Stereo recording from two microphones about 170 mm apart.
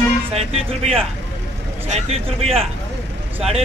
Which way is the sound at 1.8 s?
40° right (ahead or behind).